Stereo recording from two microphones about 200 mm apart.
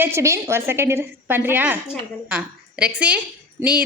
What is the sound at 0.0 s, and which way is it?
A woman's voice, 15° right (ahead or behind).